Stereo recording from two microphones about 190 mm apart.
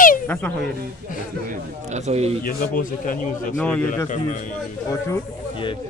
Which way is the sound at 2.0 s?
35° right (ahead or behind).